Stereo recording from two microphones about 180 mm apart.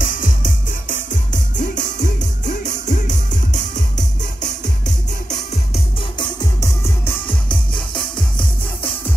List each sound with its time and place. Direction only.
0.0 s music: 50° left (ahead or behind)
6.1 s music: 20° left (ahead or behind)